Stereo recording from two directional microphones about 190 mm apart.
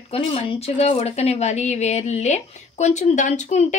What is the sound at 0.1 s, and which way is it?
A woman's voice, 30° left (ahead or behind).